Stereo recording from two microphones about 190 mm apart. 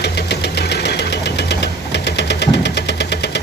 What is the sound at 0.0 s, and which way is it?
Engine knocking, 60° left (ahead or behind).